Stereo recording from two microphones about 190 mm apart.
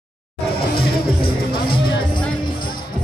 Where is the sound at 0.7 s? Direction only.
50° left (ahead or behind).